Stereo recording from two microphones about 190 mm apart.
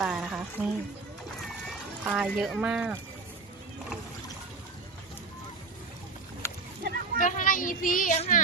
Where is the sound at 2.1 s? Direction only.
5° right (ahead or behind).